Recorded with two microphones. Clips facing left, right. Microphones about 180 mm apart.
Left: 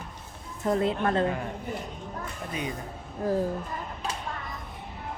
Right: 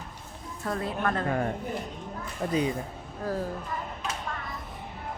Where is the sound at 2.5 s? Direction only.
30° right (ahead or behind).